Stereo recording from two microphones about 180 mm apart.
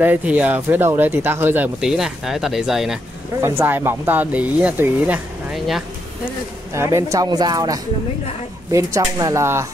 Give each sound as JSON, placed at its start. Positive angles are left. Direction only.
{"t": 0.0, "sound": "speech", "side_deg": -10}
{"t": 3.3, "sound": "speech", "side_deg": -15}
{"t": 6.7, "sound": "speech", "side_deg": -15}